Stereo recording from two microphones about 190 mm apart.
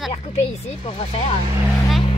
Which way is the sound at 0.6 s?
35° left (ahead or behind).